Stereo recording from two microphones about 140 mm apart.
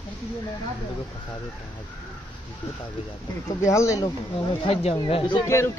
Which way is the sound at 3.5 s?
20° left (ahead or behind).